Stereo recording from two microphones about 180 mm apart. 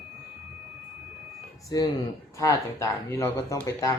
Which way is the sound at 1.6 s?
20° left (ahead or behind).